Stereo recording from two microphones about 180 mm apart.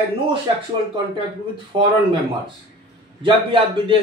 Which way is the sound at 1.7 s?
25° right (ahead or behind).